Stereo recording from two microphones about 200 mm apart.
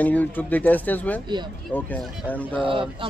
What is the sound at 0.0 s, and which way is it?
Speech, 5° left (ahead or behind).